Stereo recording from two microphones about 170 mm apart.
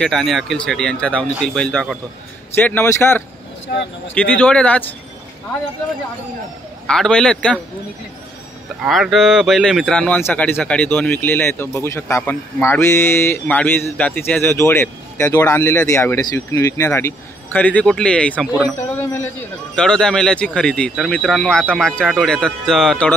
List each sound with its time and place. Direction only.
0.0 s speech: centre (ahead or behind)
3.7 s speech: 75° left (ahead or behind)
4.1 s speech: 10° left (ahead or behind)
6.9 s speech: 5° left (ahead or behind)
8.8 s speech: centre (ahead or behind)